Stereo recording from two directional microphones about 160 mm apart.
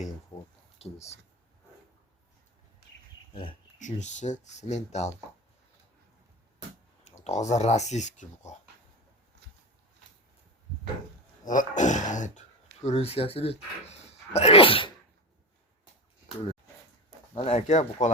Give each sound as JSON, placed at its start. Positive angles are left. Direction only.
{"t": 0.8, "sound": "speech", "side_deg": 45}
{"t": 3.8, "sound": "speech", "side_deg": 50}
{"t": 7.0, "sound": "speech", "side_deg": 45}
{"t": 11.4, "sound": "speech", "side_deg": 50}
{"t": 17.3, "sound": "speech", "side_deg": 40}